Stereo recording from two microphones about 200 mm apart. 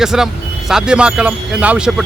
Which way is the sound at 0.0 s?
5° right (ahead or behind).